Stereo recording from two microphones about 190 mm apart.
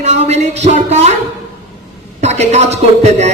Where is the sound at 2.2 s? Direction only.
35° right (ahead or behind).